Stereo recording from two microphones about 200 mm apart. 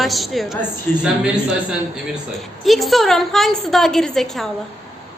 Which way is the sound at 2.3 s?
Centre (ahead or behind).